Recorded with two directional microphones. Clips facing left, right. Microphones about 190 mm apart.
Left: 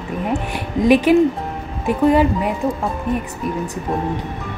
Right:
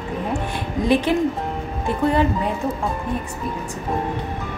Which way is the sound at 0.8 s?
15° left (ahead or behind).